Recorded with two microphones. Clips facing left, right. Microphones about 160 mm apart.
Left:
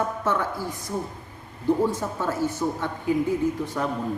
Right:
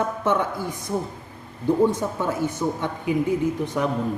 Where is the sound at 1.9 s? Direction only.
15° right (ahead or behind).